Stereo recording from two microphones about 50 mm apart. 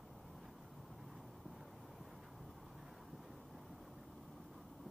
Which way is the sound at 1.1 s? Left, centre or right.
Centre.